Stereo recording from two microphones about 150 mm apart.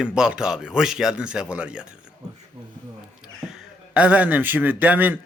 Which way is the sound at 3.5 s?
5° right (ahead or behind).